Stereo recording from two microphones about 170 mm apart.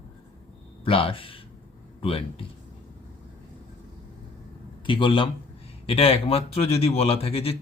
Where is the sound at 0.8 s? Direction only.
30° left (ahead or behind).